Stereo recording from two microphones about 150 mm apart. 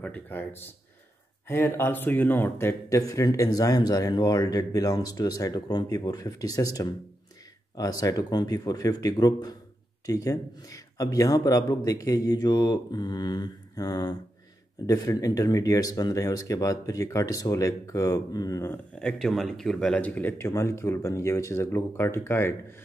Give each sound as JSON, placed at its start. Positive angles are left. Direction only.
{"t": 0.0, "sound": "speech", "side_deg": 10}
{"t": 18.9, "sound": "speech", "side_deg": 5}